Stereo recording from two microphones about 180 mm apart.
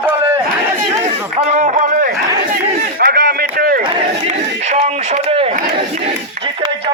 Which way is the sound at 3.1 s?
55° right (ahead or behind).